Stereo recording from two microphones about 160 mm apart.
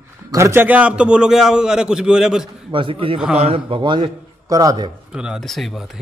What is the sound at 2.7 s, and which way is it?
A man's voice, 35° right (ahead or behind).